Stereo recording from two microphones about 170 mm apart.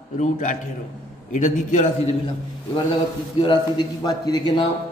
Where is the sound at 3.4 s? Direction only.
25° left (ahead or behind).